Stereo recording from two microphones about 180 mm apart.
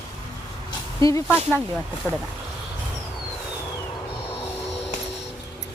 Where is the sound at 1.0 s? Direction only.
15° left (ahead or behind).